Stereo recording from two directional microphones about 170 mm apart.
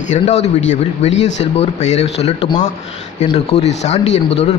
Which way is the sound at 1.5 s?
40° left (ahead or behind).